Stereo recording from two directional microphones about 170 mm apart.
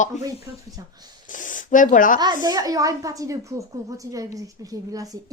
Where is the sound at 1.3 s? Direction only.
50° left (ahead or behind).